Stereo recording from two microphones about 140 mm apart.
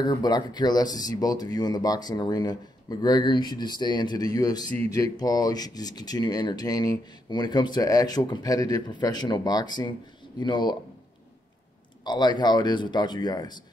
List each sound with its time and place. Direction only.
0.0 s speech: 30° left (ahead or behind)
12.0 s speech: 30° left (ahead or behind)